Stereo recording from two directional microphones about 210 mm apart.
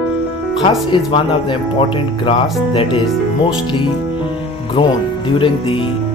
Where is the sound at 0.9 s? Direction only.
25° left (ahead or behind).